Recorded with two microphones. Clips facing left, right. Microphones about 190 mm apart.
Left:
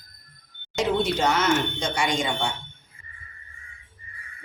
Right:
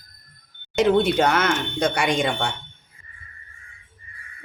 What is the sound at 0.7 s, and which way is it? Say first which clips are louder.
Speech: right 6 dB; 55° right (ahead or behind).